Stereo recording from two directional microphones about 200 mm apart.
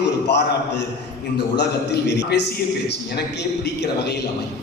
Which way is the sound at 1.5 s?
60° left (ahead or behind).